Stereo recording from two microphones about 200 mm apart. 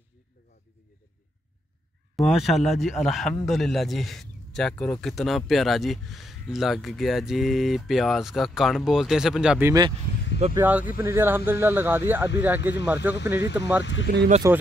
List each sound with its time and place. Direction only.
2.1 s speech: centre (ahead or behind)
13.1 s speech: 60° left (ahead or behind)
14.1 s speech: 50° right (ahead or behind)
14.4 s speech: 15° right (ahead or behind)